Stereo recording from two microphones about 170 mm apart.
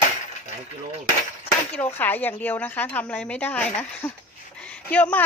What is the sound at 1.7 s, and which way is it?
Speech, 10° left (ahead or behind).